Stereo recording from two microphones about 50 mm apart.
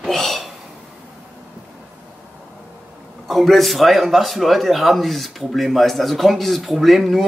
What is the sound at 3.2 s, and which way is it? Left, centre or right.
A man's voice, centre.